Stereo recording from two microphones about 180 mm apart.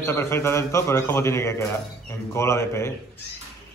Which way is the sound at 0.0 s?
15° left (ahead or behind).